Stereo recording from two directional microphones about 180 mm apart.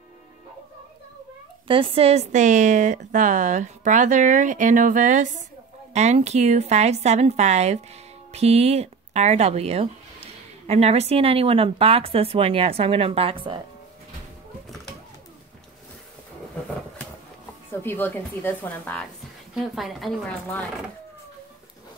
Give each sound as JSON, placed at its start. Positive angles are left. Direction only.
{"t": 1.7, "sound": "a woman's voice", "side_deg": -30}
{"t": 17.8, "sound": "a woman's voice", "side_deg": 10}